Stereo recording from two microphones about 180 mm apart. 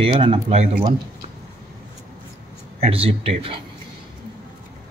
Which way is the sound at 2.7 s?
35° right (ahead or behind).